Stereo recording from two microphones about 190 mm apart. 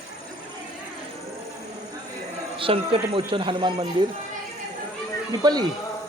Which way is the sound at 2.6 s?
30° right (ahead or behind).